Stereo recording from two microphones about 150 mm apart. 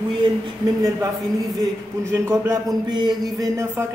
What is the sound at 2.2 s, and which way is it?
Speech, 15° right (ahead or behind).